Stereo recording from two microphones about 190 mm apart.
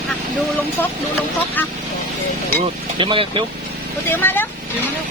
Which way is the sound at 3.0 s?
25° right (ahead or behind).